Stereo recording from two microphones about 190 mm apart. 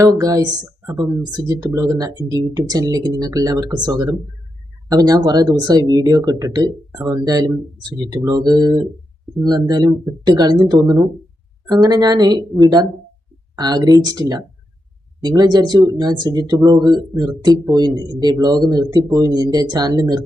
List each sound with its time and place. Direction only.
0.0 s speech: 15° right (ahead or behind)
13.6 s speech: 20° right (ahead or behind)